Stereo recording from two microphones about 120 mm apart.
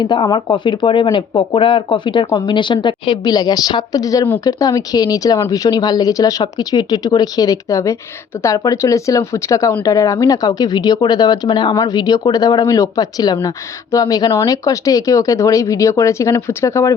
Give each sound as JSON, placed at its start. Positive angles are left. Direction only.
{"t": 0.0, "sound": "speech", "side_deg": 40}